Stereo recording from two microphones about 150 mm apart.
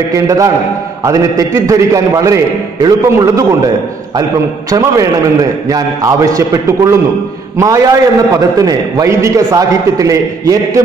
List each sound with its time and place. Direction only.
0.1 s a man's voice: 25° right (ahead or behind)